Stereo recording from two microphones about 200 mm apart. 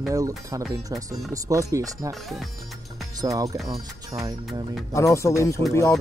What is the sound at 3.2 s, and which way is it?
Speech, 15° right (ahead or behind).